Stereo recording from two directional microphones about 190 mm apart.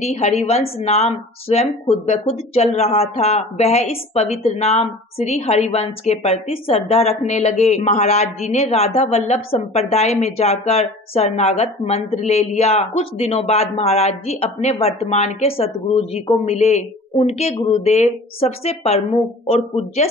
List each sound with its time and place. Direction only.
0.0 s a woman's voice: 35° left (ahead or behind)